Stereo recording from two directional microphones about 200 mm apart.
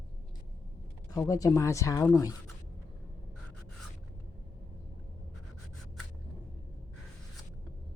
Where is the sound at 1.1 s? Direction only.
15° left (ahead or behind).